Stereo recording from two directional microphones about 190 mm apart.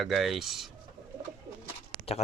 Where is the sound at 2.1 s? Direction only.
30° left (ahead or behind).